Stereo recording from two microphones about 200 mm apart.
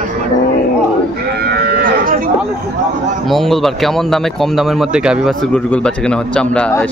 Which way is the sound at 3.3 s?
Centre (ahead or behind).